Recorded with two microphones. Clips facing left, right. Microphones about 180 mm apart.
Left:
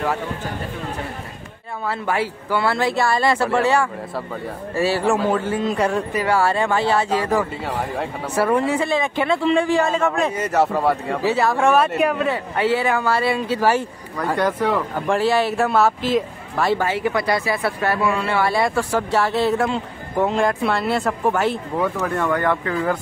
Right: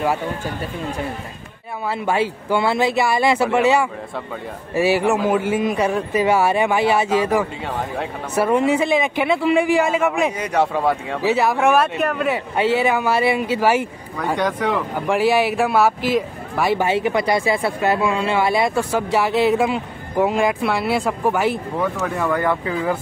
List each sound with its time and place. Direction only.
1.9 s speech: 20° right (ahead or behind)
10.5 s speech: 5° left (ahead or behind)
11.2 s speech: 15° right (ahead or behind)
11.9 s speech: 5° left (ahead or behind)
12.3 s speech: 20° right (ahead or behind)
14.1 s speech: 5° left (ahead or behind)
15.0 s speech: 15° right (ahead or behind)